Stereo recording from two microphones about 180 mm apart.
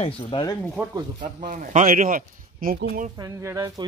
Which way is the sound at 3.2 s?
15° right (ahead or behind).